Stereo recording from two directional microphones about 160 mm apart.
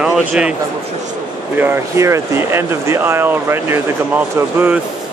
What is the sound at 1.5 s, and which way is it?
Speech, 15° right (ahead or behind).